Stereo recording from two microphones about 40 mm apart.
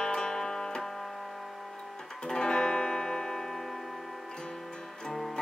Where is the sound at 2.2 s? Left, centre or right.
Centre.